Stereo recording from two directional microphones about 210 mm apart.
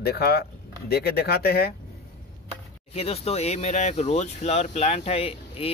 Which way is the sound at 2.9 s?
30° left (ahead or behind).